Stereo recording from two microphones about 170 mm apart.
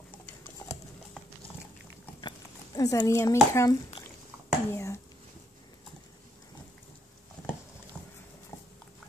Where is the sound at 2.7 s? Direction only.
20° left (ahead or behind).